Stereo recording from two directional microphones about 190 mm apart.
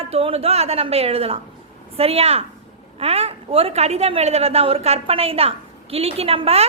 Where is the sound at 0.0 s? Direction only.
30° right (ahead or behind).